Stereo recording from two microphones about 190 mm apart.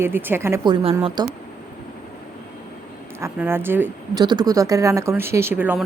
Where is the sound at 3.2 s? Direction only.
15° right (ahead or behind).